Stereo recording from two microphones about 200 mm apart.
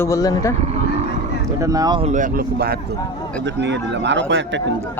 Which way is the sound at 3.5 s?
60° right (ahead or behind).